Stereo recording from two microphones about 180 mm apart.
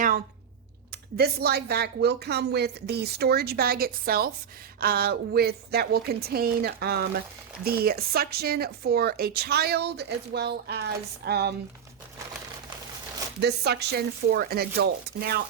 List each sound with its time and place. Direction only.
1.1 s speech: 60° right (ahead or behind)
13.4 s speech: 65° right (ahead or behind)